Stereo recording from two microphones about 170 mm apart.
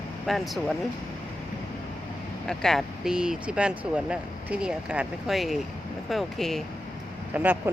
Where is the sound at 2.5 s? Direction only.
Centre (ahead or behind).